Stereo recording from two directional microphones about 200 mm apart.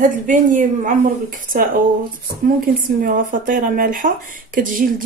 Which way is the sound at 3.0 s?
40° right (ahead or behind).